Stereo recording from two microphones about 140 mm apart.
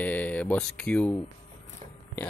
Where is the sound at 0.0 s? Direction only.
10° left (ahead or behind).